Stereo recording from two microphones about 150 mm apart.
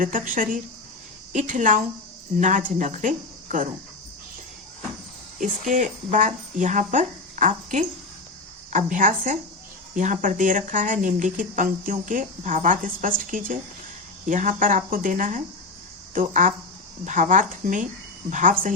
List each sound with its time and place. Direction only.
0.0 s speech: 65° right (ahead or behind)
5.4 s speech: 55° right (ahead or behind)